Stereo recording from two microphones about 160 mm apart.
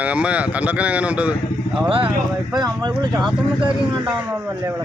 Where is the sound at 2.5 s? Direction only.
25° right (ahead or behind).